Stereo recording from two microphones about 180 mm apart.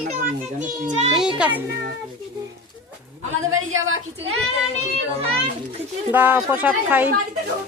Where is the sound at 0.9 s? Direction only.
40° right (ahead or behind).